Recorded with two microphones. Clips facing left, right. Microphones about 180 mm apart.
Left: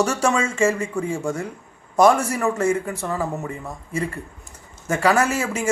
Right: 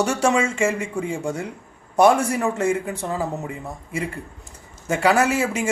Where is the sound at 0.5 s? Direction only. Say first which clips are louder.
Left 2 dB; 15° right (ahead or behind).